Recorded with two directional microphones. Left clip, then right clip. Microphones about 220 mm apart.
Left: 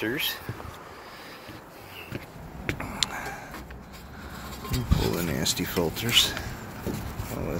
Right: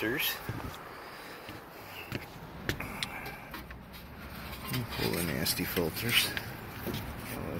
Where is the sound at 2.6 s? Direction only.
5° left (ahead or behind).